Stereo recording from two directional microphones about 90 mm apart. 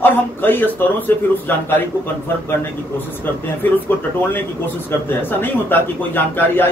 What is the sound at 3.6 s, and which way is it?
A man's voice, 20° left (ahead or behind).